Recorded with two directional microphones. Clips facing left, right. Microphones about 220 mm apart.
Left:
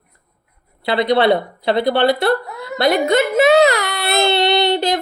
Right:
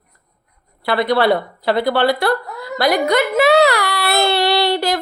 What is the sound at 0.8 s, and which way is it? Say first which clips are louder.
A child's voice: left 1 dB; 20° left (ahead or behind).